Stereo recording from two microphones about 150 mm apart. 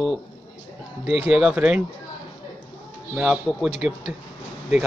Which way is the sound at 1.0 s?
40° left (ahead or behind).